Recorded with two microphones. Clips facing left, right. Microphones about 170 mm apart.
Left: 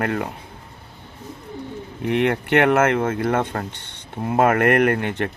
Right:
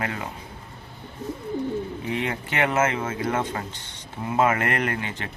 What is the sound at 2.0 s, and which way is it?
Speech, 65° left (ahead or behind).